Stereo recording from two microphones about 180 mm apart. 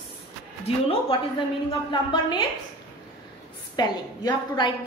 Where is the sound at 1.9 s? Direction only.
25° left (ahead or behind).